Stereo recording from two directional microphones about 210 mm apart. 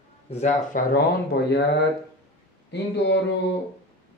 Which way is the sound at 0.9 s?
50° left (ahead or behind).